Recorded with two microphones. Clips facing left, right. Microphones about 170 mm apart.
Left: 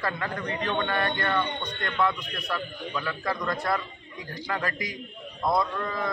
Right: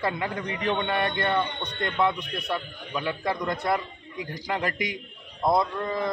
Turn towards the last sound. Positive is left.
turn(degrees=-25)  # may be behind; listen again after turning